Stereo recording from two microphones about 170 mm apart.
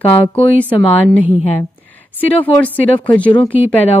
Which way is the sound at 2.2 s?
10° left (ahead or behind).